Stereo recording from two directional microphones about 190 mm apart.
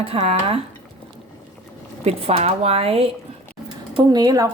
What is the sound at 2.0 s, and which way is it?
A woman's voice, 35° right (ahead or behind).